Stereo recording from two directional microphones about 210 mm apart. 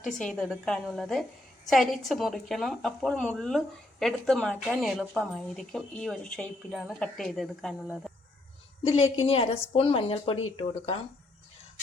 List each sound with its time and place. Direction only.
0.0 s a woman's voice: 5° left (ahead or behind)
8.8 s a woman's voice: 30° left (ahead or behind)